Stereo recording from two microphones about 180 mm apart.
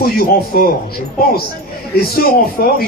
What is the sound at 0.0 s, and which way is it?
Speech, 55° left (ahead or behind).